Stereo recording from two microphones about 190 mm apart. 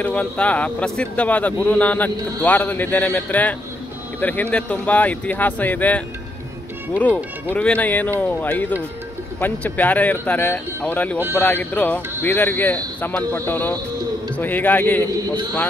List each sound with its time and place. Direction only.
0.0 s speech: 10° left (ahead or behind)
7.5 s speech: 10° left (ahead or behind)
15.0 s a man's voice: 20° right (ahead or behind)